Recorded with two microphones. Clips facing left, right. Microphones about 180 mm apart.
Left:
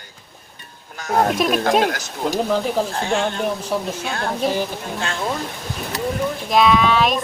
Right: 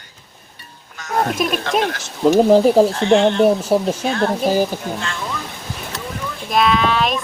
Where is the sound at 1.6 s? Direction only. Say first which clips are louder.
Left 2 dB; 40° left (ahead or behind).